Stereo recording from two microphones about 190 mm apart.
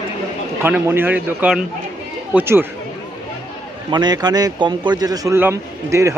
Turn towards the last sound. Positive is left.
turn(degrees=-15)  # may be behind; listen again after turning